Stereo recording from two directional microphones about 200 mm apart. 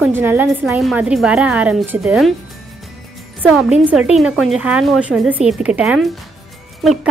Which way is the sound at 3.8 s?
5° right (ahead or behind).